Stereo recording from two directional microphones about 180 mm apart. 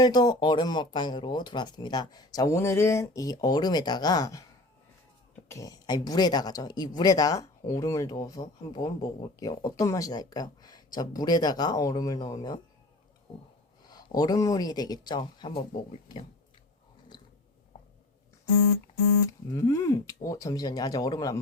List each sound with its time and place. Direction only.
0.0 s speech: 25° left (ahead or behind)
5.5 s speech: 20° left (ahead or behind)
13.8 s speech: 20° left (ahead or behind)
19.5 s speech: 20° left (ahead or behind)